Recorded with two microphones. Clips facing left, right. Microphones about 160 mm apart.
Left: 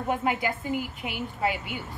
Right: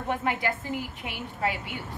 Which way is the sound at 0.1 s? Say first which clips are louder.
Left 1 dB; 5° left (ahead or behind).